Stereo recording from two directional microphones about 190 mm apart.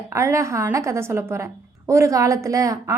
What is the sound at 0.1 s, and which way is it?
A woman's voice, 15° right (ahead or behind).